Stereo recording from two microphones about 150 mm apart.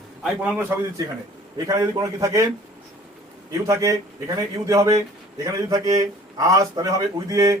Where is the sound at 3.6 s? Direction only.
20° right (ahead or behind).